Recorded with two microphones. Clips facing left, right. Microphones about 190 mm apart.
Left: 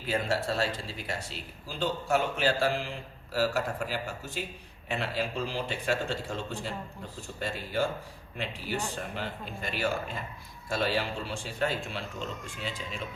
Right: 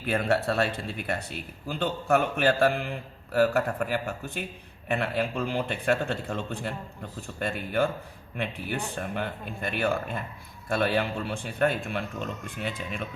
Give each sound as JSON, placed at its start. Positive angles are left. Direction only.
{"t": 0.1, "sound": "speech", "side_deg": -60}